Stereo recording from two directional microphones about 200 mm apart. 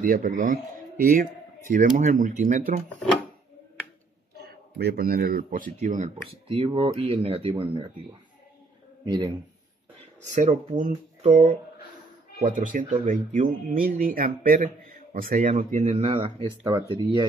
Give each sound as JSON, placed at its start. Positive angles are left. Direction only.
{"t": 0.0, "sound": "a man's voice", "side_deg": -40}
{"t": 4.5, "sound": "speech", "side_deg": -50}
{"t": 9.0, "sound": "speech", "side_deg": -20}
{"t": 10.4, "sound": "speech", "side_deg": -35}